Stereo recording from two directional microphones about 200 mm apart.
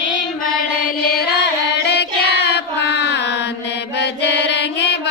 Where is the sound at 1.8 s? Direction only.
55° left (ahead or behind).